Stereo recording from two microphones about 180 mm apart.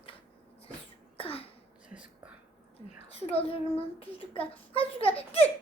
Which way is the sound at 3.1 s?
35° left (ahead or behind).